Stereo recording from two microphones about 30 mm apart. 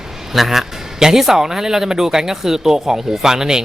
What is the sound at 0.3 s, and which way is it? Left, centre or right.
Speech, centre.